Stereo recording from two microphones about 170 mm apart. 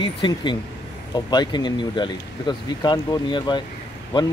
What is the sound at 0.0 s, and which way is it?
Speech, 25° left (ahead or behind).